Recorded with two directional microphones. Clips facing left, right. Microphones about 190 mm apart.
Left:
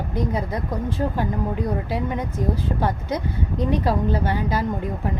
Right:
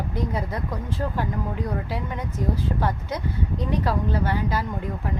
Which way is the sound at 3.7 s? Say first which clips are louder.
Left 3 dB; 15° left (ahead or behind).